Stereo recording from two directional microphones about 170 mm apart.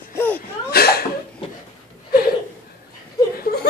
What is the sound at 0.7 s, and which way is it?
Cough, 65° left (ahead or behind).